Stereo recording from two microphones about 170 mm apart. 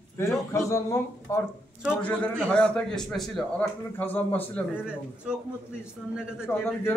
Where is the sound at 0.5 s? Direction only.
15° left (ahead or behind).